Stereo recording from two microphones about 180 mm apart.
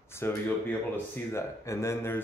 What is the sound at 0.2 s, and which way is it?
Speech, 15° left (ahead or behind).